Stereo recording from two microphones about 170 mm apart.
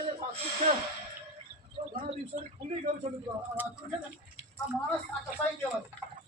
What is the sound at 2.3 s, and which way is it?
Speech, 45° right (ahead or behind).